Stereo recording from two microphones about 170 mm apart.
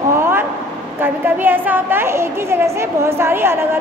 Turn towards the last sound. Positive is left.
turn(degrees=-15)  # may be behind; listen again after turning